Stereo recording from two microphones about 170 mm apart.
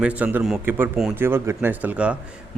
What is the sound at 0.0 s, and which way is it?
Speech, 10° right (ahead or behind).